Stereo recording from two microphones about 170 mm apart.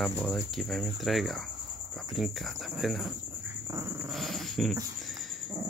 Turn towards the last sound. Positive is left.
turn(degrees=0)  # may be behind; listen again after turning